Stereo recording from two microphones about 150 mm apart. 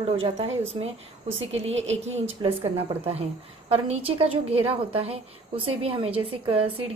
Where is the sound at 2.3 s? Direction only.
40° right (ahead or behind).